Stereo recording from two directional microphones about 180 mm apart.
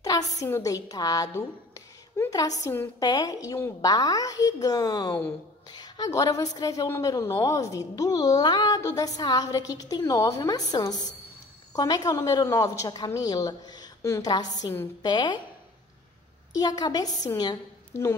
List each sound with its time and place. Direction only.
0.0 s a woman's voice: 20° left (ahead or behind)
16.5 s a woman's voice: 20° left (ahead or behind)